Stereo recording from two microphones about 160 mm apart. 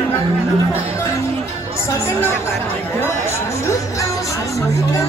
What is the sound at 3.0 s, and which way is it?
Speech, 20° left (ahead or behind).